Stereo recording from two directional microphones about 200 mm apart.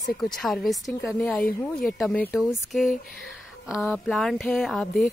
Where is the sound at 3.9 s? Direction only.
Centre (ahead or behind).